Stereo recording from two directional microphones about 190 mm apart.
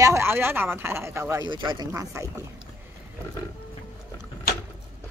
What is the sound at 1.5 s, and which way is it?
Speech, 25° right (ahead or behind).